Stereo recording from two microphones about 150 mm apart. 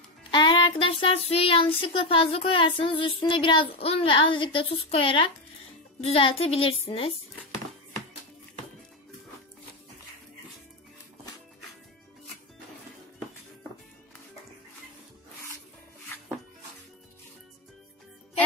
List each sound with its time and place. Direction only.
0.3 s child singing: 30° left (ahead or behind)